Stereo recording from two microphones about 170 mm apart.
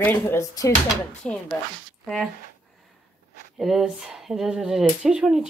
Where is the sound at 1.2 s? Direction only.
5° left (ahead or behind).